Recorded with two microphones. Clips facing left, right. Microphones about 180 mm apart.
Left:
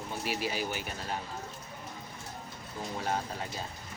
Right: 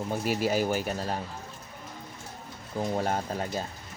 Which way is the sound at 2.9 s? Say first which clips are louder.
Right 3 dB; 50° right (ahead or behind).